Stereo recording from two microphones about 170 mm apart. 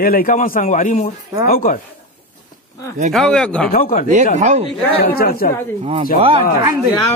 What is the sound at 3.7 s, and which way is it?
Speech, 55° left (ahead or behind).